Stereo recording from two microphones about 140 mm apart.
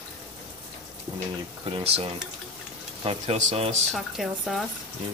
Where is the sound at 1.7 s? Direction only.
45° right (ahead or behind).